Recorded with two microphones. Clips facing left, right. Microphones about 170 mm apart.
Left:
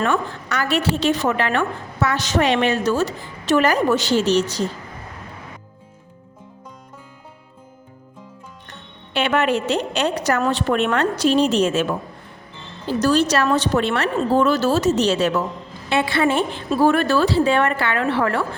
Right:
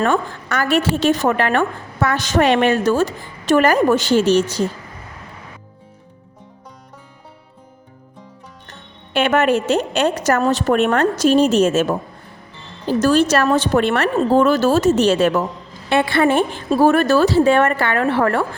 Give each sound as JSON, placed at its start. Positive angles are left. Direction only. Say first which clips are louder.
{"t": 0.0, "sound": "a woman's voice", "louder": "right 3 dB", "side_deg": -50}
{"t": 9.1, "sound": "a woman's voice", "louder": "right 4 dB", "side_deg": -50}
{"t": 13.0, "sound": "a woman's voice", "louder": "right 3 dB", "side_deg": -50}